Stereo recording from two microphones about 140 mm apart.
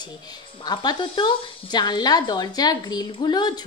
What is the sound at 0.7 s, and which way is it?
A woman's voice, 30° left (ahead or behind).